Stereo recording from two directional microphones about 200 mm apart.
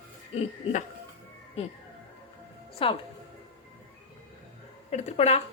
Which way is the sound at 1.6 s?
30° left (ahead or behind).